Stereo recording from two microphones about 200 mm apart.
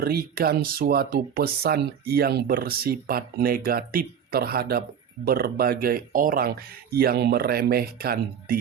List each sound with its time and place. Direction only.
0.0 s speech: 50° right (ahead or behind)